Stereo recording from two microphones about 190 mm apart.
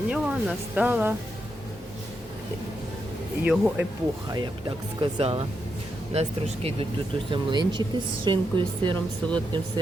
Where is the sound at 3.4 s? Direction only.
5° right (ahead or behind).